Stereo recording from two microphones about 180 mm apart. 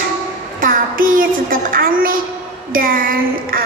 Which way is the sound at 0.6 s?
50° right (ahead or behind).